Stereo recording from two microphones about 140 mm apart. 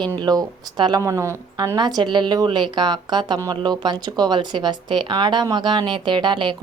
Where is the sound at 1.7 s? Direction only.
30° right (ahead or behind).